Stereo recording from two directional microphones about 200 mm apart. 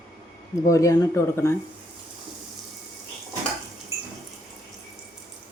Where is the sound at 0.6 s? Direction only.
15° left (ahead or behind).